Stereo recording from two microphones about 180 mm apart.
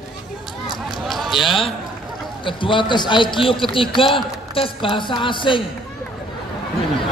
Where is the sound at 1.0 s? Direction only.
Centre (ahead or behind).